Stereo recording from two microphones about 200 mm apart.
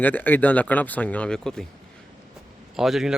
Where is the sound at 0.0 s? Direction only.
10° left (ahead or behind).